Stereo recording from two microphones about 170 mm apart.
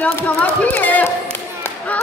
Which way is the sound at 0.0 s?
10° left (ahead or behind).